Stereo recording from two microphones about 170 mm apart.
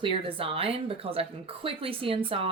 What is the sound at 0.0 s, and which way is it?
Speech, 30° right (ahead or behind).